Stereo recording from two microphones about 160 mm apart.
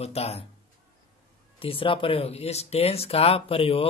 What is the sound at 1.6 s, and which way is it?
Speech, 35° left (ahead or behind).